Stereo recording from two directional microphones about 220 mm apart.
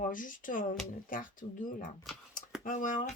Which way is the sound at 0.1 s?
35° left (ahead or behind).